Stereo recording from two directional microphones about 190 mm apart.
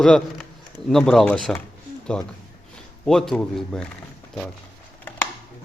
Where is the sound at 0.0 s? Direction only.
Centre (ahead or behind).